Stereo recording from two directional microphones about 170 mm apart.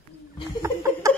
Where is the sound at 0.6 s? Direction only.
15° right (ahead or behind).